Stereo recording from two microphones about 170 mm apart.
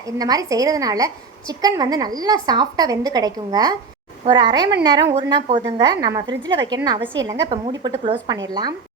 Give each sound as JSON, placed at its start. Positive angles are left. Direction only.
{"t": 0.0, "sound": "a woman's voice", "side_deg": -20}